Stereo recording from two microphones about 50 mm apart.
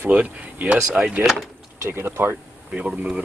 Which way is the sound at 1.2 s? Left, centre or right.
Centre.